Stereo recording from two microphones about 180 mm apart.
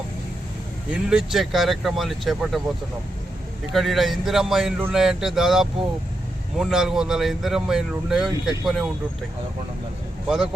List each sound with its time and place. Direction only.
0.9 s speech: 5° right (ahead or behind)
3.8 s speech: centre (ahead or behind)
10.2 s speech: 5° right (ahead or behind)